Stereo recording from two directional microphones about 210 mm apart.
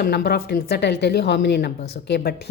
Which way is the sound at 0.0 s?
50° left (ahead or behind).